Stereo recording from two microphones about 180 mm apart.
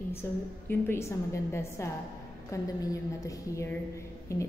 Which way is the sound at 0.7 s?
15° left (ahead or behind).